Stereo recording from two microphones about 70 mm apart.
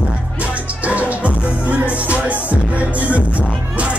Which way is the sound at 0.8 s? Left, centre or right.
Centre.